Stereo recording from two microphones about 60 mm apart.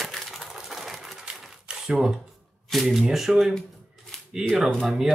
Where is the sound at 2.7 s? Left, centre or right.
Centre.